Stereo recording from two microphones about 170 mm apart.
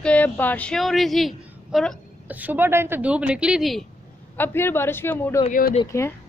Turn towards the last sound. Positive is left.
turn(degrees=15)  # may be behind; listen again after turning